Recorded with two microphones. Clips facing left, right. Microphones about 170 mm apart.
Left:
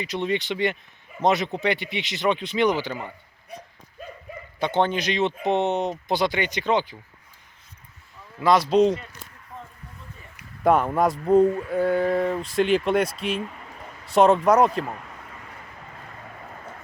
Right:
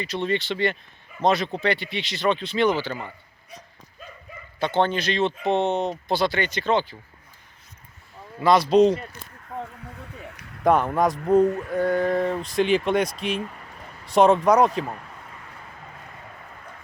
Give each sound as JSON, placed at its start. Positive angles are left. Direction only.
{"t": 0.0, "sound": "speech", "side_deg": 15}
{"t": 3.5, "sound": "dog", "side_deg": 55}
{"t": 4.6, "sound": "speech", "side_deg": 15}
{"t": 8.4, "sound": "speech", "side_deg": 5}
{"t": 9.5, "sound": "a sound", "side_deg": -65}
{"t": 10.6, "sound": "speech", "side_deg": 5}